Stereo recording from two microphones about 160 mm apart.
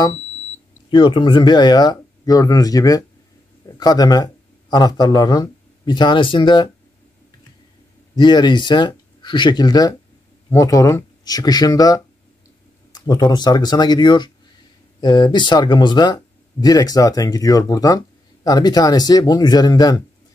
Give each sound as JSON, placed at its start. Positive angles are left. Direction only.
{"t": 0.8, "sound": "speech", "side_deg": 30}
{"t": 8.2, "sound": "speech", "side_deg": 25}